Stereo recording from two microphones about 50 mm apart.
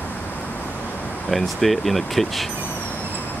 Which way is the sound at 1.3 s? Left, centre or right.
Centre.